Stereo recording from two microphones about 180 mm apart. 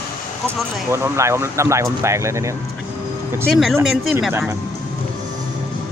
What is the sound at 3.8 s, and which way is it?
Speech, centre (ahead or behind).